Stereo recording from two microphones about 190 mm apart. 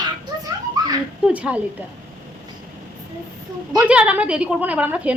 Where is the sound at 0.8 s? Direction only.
20° right (ahead or behind).